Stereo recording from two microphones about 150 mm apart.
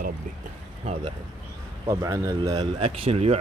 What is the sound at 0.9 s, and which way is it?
Speech, 45° right (ahead or behind).